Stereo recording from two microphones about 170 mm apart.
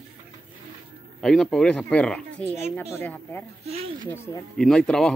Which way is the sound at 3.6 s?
40° right (ahead or behind).